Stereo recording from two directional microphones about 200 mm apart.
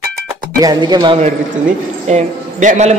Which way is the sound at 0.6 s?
20° right (ahead or behind).